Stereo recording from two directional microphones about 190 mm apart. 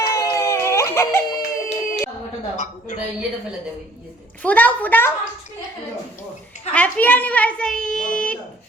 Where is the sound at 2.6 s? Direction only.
40° left (ahead or behind).